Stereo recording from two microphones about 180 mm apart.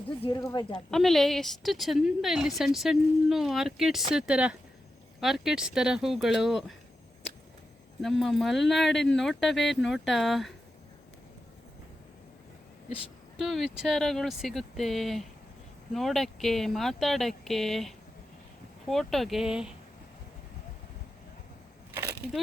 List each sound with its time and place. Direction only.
0.3 s speech: 25° left (ahead or behind)
0.7 s a woman's voice: centre (ahead or behind)
8.0 s a woman's voice: centre (ahead or behind)
13.4 s a woman's voice: centre (ahead or behind)
22.2 s speech: 10° right (ahead or behind)